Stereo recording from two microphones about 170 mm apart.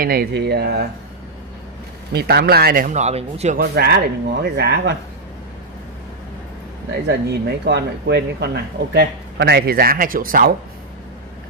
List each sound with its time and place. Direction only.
0.0 s speech: 60° right (ahead or behind)
2.1 s speech: 65° right (ahead or behind); by 3.5 s 40° right (ahead or behind)
3.5 s speech: 70° right (ahead or behind)
7.1 s speech: 80° right; by 10.5 s 55° right (ahead or behind)